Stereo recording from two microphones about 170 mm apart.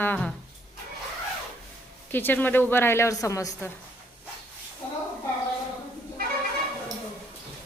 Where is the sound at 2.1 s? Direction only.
10° left (ahead or behind).